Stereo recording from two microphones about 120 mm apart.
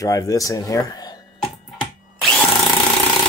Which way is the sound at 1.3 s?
5° left (ahead or behind).